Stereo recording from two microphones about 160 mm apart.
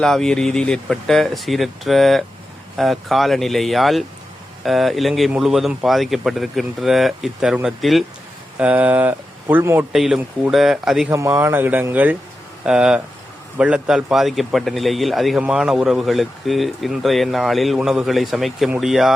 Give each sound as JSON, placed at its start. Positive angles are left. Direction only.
{"t": 0.0, "sound": "speech", "side_deg": 0}
{"t": 9.9, "sound": "speech", "side_deg": 0}
{"t": 11.1, "sound": "speech", "side_deg": -20}